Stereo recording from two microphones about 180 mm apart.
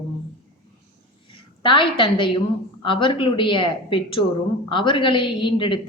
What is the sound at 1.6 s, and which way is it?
A woman's voice, 30° left (ahead or behind).